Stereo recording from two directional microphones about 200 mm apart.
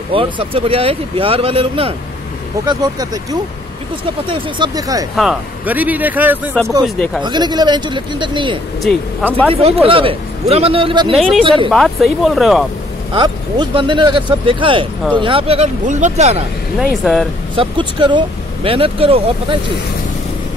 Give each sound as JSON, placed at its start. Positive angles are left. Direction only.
{"t": 0.1, "sound": "a man's voice", "side_deg": -25}
{"t": 5.1, "sound": "speech", "side_deg": 0}
{"t": 7.2, "sound": "a man's voice", "side_deg": -20}
{"t": 11.7, "sound": "speech", "side_deg": 0}
{"t": 13.1, "sound": "a man's voice", "side_deg": -25}
{"t": 16.9, "sound": "speech", "side_deg": 0}
{"t": 17.6, "sound": "a man's voice", "side_deg": -25}